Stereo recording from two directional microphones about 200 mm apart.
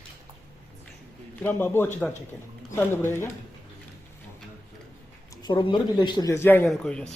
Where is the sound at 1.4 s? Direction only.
10° left (ahead or behind).